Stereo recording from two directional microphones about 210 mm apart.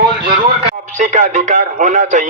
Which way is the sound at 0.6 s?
35° right (ahead or behind).